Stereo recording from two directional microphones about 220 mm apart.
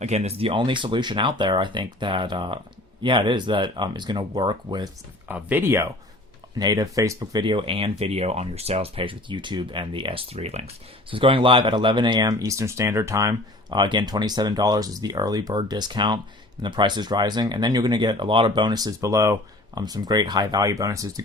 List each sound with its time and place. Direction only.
0.0 s speech: 30° right (ahead or behind)
5.3 s speech: 10° right (ahead or behind)